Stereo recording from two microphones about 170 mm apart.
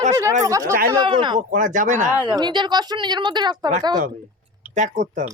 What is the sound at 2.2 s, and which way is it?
Speech, 25° right (ahead or behind).